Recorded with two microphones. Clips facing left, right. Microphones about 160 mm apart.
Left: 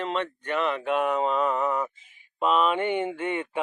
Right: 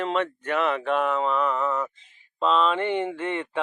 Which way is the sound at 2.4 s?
10° left (ahead or behind).